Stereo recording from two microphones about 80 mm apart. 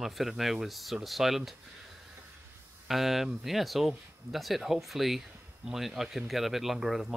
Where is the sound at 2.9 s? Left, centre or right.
Centre.